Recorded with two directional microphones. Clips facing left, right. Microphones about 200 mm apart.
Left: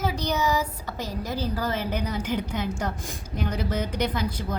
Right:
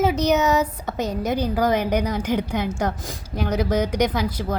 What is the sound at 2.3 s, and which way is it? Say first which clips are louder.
Speech: right 5 dB; 65° right (ahead or behind).